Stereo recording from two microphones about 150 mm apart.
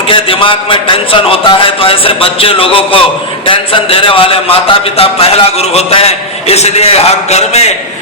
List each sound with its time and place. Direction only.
0.1 s a man's voice: 35° left (ahead or behind)